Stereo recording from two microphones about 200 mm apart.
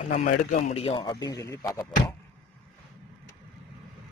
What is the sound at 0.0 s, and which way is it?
A man's voice, 40° left (ahead or behind).